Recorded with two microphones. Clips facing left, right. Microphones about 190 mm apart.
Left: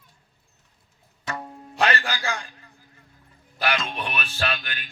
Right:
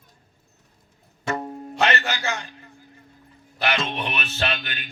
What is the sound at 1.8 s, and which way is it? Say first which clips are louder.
Speech: right 1 dB; 25° right (ahead or behind).